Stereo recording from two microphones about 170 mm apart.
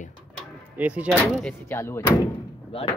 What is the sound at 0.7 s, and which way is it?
Speech, 10° right (ahead or behind).